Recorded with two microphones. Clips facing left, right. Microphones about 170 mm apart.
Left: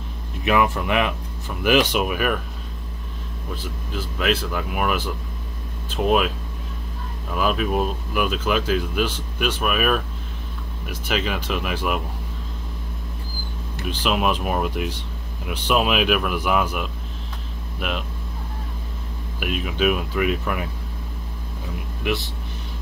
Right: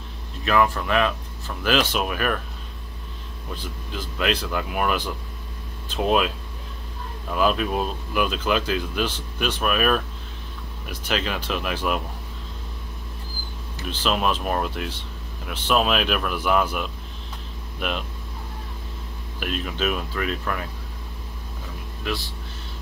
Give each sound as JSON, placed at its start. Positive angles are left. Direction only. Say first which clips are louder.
{"t": 0.4, "sound": "speech", "louder": "left 1 dB", "side_deg": 15}
{"t": 3.5, "sound": "speech", "louder": "left 2 dB", "side_deg": 10}
{"t": 7.3, "sound": "speech", "louder": "even", "side_deg": 5}
{"t": 13.8, "sound": "speech", "louder": "left 1 dB", "side_deg": 10}
{"t": 19.4, "sound": "speech", "louder": "left 4 dB", "side_deg": 10}
{"t": 22.0, "sound": "speech", "louder": "left 4 dB", "side_deg": 20}